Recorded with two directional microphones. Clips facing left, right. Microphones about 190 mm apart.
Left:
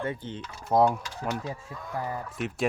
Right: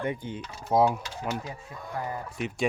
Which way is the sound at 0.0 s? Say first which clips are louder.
Right 1 dB; 15° right (ahead or behind).